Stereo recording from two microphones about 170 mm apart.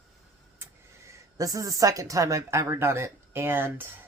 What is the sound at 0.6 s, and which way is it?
Speech, 20° right (ahead or behind).